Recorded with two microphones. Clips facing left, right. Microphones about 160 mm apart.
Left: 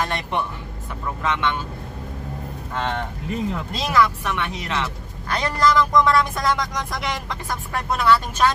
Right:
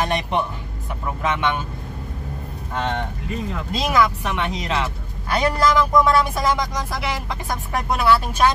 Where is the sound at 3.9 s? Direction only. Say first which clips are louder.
Even; 20° right (ahead or behind).